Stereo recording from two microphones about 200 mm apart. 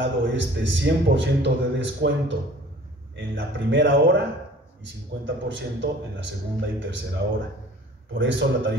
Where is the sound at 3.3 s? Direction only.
65° right (ahead or behind).